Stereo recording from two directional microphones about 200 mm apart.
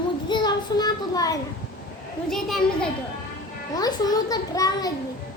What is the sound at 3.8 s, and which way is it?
A child's voice, 20° left (ahead or behind).